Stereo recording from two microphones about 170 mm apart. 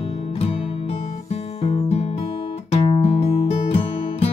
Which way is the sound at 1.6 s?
35° left (ahead or behind).